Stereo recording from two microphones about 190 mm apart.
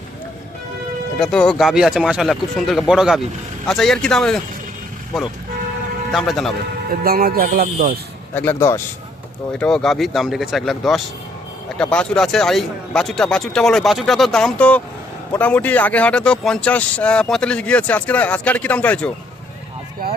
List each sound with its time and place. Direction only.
1.2 s speech: 5° left (ahead or behind)
6.1 s speech: centre (ahead or behind)
6.9 s speech: 50° right (ahead or behind)
8.4 s speech: 15° left (ahead or behind)
9.5 s speech: 5° left (ahead or behind)
20.0 s speech: 50° right (ahead or behind)